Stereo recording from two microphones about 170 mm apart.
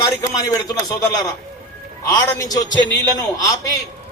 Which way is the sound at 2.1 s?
20° left (ahead or behind).